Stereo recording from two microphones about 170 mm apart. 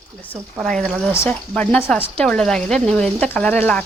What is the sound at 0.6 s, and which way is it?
Speech, 5° left (ahead or behind).